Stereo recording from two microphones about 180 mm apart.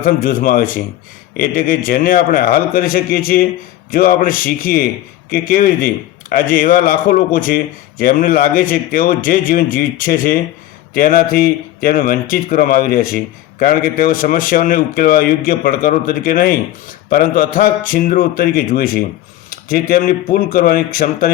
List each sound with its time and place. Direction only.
0.0 s a man's voice: 50° left (ahead or behind)